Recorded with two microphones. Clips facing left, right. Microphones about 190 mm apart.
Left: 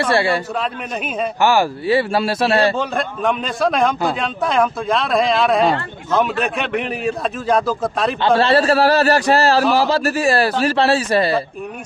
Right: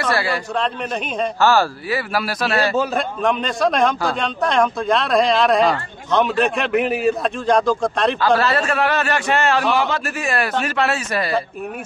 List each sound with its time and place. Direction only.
0.0 s a man's voice: 25° left (ahead or behind)
1.4 s speech: 15° left (ahead or behind)
1.9 s a man's voice: 25° left (ahead or behind)
2.8 s speech: centre (ahead or behind)
8.4 s a man's voice: 30° left (ahead or behind)